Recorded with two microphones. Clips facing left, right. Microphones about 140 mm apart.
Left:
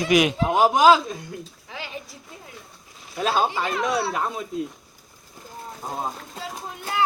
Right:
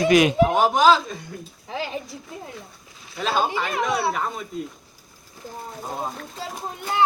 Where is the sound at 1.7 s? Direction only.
35° right (ahead or behind).